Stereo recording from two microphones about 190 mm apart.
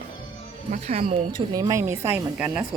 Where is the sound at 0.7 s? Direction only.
35° right (ahead or behind); by 2.5 s 10° right (ahead or behind).